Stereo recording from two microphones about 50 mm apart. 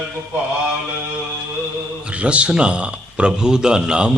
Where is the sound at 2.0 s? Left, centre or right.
Right.